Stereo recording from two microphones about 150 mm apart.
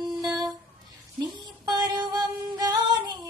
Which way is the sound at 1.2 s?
30° right (ahead or behind).